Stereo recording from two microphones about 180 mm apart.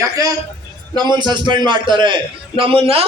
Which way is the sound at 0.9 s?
25° right (ahead or behind).